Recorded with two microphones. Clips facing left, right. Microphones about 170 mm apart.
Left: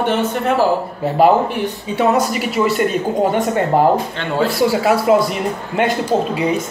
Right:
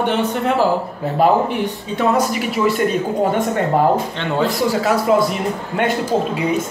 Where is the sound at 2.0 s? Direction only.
Centre (ahead or behind).